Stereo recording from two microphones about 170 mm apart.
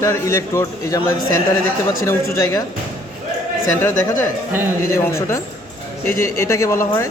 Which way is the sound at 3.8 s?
15° left (ahead or behind).